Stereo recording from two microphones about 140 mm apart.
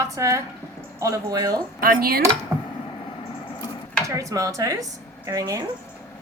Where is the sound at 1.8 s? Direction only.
90° right.